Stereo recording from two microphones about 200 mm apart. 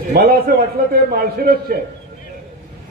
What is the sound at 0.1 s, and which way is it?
A man's voice, 50° right (ahead or behind).